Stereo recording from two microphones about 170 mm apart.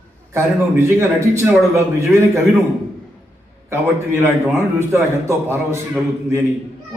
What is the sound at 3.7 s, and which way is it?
A man's voice, 15° right (ahead or behind).